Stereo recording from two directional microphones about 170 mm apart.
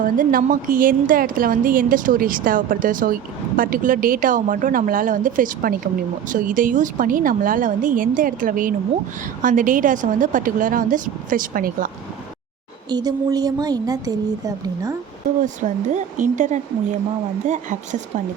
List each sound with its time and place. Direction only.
0.0 s a woman's voice: 55° right (ahead or behind)
12.9 s a woman's voice: 20° right (ahead or behind)
15.4 s a woman's voice: 50° right (ahead or behind)